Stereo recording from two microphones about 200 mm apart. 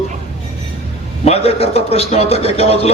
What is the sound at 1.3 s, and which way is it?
A man's voice, 30° left (ahead or behind).